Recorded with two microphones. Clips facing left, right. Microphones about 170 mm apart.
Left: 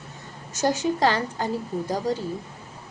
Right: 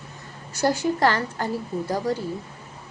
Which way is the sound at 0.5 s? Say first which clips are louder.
Right 1 dB; 20° left (ahead or behind).